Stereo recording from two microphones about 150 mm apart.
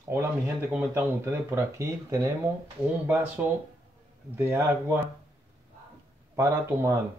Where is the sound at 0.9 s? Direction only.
20° right (ahead or behind).